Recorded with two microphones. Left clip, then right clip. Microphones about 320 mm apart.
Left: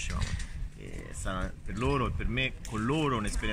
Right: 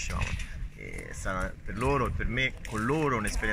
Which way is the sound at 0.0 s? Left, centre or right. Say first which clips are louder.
Right 3 dB; centre.